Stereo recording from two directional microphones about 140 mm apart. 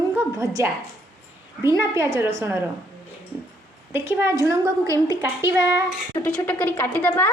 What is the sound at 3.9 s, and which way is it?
A woman's voice, 20° right (ahead or behind).